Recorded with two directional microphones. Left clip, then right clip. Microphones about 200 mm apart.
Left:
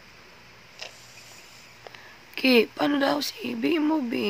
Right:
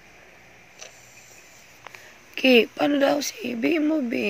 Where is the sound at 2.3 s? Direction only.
Centre (ahead or behind).